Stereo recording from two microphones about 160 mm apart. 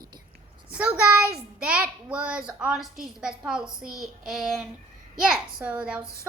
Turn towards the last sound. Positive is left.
turn(degrees=-5)  # may be behind; listen again after turning